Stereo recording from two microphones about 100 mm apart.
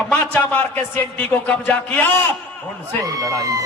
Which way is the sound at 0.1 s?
15° left (ahead or behind).